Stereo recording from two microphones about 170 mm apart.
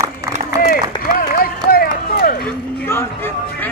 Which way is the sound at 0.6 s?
60° left (ahead or behind).